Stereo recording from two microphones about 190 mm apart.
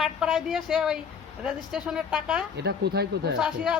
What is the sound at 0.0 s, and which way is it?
A man's voice, 5° right (ahead or behind).